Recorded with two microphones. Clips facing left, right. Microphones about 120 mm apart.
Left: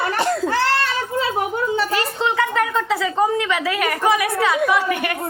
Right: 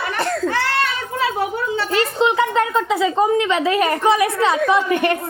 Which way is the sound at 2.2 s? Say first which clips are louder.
Right 3 dB; 20° right (ahead or behind).